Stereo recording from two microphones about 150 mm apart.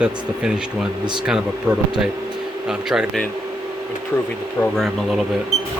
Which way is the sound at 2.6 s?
5° right (ahead or behind).